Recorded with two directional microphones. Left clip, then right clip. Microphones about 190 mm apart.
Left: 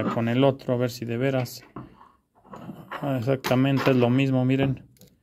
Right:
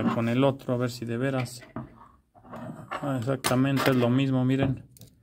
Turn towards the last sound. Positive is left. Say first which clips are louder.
# left 3 dB
turn(degrees=25)  # may be behind; listen again after turning